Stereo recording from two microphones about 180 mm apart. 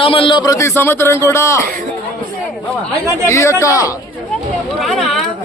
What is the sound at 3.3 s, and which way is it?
Speech, 15° left (ahead or behind).